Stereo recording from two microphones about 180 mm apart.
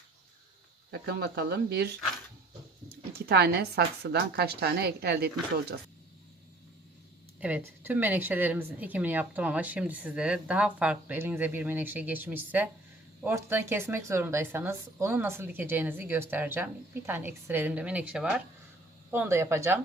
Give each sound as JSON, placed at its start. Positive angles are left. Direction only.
{"t": 0.9, "sound": "a woman's voice", "side_deg": -70}
{"t": 3.2, "sound": "a woman's voice", "side_deg": -65}
{"t": 7.3, "sound": "speech", "side_deg": -10}